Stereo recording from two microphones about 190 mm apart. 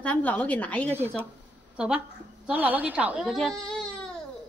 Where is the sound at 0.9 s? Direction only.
10° right (ahead or behind).